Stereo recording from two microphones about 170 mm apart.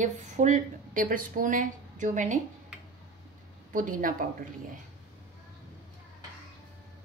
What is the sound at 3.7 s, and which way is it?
Speech, 55° right (ahead or behind).